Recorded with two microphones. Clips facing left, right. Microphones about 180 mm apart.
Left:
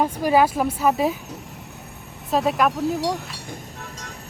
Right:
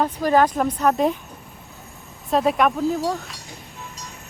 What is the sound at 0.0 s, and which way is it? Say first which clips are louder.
Speech: even; 10° left (ahead or behind).